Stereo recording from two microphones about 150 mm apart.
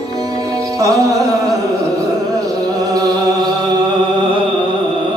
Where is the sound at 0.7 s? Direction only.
20° right (ahead or behind).